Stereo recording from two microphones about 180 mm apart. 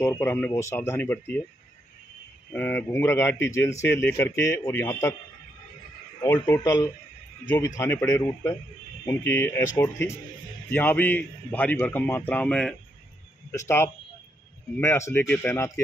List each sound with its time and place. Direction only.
0.0 s a man's voice: 10° left (ahead or behind)
2.5 s a man's voice: 10° left (ahead or behind)
6.2 s a man's voice: 15° left (ahead or behind)